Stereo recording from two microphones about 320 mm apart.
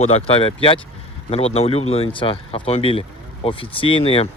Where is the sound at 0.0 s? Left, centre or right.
Centre.